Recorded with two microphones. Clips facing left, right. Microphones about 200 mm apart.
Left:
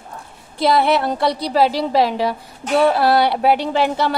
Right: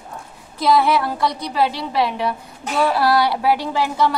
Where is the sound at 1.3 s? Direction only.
35° left (ahead or behind).